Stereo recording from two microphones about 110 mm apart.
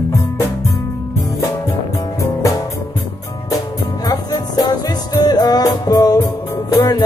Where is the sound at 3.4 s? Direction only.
30° left (ahead or behind).